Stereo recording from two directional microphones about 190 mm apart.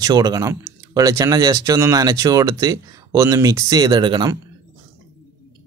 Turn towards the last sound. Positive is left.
turn(degrees=-25)  # may be behind; listen again after turning